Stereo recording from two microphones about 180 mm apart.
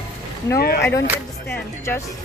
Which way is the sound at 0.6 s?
60° left (ahead or behind).